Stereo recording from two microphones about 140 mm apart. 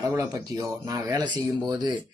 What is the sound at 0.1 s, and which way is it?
Speech, 25° right (ahead or behind).